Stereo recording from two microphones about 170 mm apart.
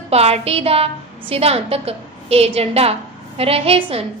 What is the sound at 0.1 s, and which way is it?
A woman's voice, 35° right (ahead or behind).